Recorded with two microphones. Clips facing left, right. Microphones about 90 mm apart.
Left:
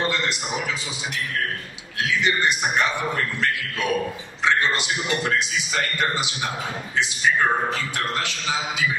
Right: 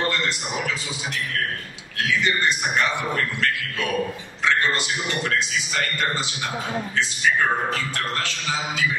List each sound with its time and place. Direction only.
2.0 s a man's voice: 20° left (ahead or behind)
4.5 s a man's voice: 20° left (ahead or behind)